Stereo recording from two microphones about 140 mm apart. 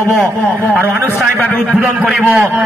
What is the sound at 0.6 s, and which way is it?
Speech, 15° right (ahead or behind).